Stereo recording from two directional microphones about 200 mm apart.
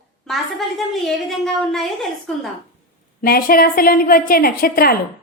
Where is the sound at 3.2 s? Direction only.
45° left (ahead or behind).